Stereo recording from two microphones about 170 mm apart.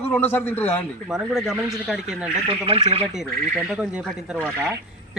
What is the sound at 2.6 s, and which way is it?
Speech, 35° right (ahead or behind).